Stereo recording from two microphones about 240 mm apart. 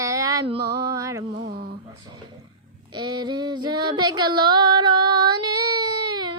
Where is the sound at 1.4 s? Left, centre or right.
Right.